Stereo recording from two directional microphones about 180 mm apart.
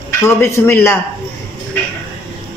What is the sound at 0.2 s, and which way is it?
Speech, 15° left (ahead or behind).